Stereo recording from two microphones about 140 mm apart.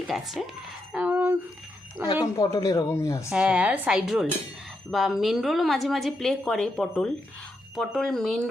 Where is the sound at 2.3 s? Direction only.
25° left (ahead or behind).